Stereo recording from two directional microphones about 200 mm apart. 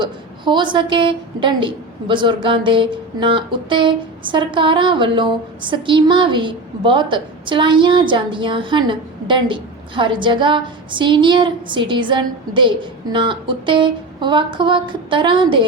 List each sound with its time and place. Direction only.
0.0 s a woman's voice: 25° right (ahead or behind)